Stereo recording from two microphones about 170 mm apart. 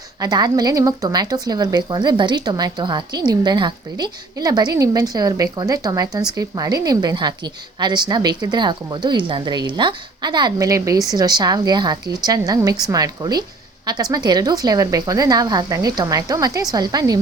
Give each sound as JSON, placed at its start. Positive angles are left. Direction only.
{"t": 0.2, "sound": "a woman's voice", "side_deg": -25}